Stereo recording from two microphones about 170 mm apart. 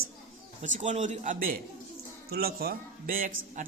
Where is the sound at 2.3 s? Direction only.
65° right (ahead or behind).